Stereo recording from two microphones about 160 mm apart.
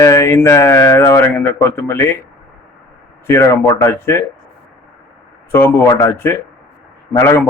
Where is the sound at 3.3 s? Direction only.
15° left (ahead or behind).